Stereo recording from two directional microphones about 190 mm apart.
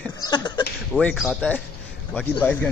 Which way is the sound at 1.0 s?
Centre (ahead or behind).